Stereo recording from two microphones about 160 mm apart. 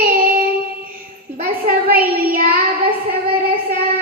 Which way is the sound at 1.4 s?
70° right (ahead or behind).